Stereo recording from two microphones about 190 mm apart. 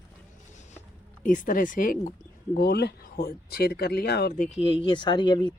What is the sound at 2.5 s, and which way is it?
Speech, 60° left (ahead or behind).